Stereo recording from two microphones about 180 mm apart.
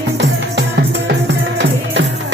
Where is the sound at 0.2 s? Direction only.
70° right (ahead or behind).